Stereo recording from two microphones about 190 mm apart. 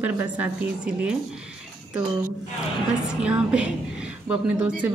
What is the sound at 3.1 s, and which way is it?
Speech, 5° right (ahead or behind).